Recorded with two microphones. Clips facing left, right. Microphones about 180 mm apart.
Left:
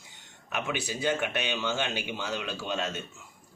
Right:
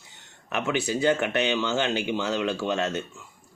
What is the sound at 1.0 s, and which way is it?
A man's voice, 65° right (ahead or behind).